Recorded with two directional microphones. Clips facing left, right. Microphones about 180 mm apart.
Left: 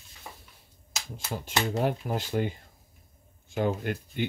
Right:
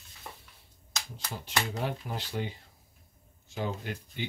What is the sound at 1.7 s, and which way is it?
Speech, 50° left (ahead or behind).